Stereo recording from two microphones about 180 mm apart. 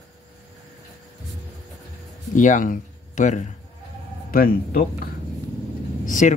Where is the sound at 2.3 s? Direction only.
45° left (ahead or behind).